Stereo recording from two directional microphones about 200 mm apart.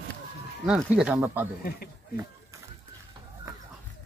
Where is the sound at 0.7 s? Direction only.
5° right (ahead or behind).